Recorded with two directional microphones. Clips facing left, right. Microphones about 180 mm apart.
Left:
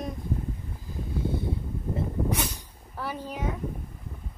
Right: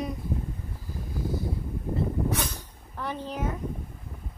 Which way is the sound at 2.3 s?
10° left (ahead or behind).